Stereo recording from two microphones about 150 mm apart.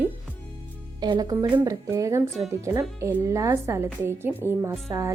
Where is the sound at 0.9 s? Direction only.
30° right (ahead or behind).